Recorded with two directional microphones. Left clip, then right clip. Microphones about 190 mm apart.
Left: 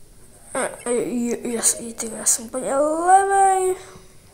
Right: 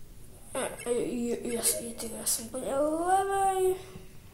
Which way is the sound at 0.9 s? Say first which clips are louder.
Left 6 dB; 30° left (ahead or behind).